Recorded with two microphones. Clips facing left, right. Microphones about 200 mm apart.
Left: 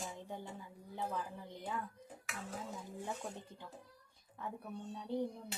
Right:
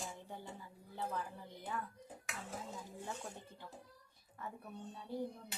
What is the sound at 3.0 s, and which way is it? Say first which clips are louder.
Speech: left 4 dB; 15° left (ahead or behind).